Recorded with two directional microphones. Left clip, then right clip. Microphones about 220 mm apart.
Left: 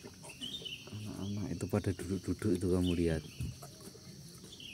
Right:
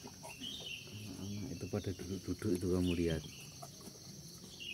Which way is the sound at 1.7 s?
25° left (ahead or behind).